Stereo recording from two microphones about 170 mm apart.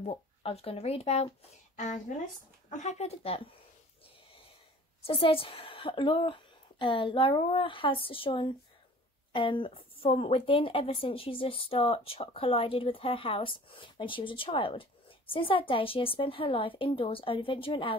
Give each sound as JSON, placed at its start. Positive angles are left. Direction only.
{"t": 0.0, "sound": "speech", "side_deg": 35}
{"t": 5.0, "sound": "speech", "side_deg": 35}